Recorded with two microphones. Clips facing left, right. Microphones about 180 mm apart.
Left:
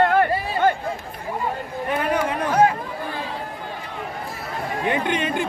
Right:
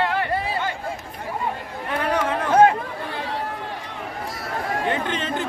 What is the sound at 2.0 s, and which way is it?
Chatter, 15° left (ahead or behind).